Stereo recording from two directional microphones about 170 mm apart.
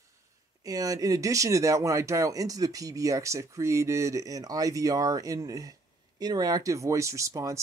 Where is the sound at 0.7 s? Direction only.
20° right (ahead or behind).